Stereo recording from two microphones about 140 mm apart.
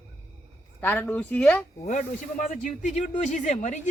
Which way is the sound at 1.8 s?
60° left (ahead or behind).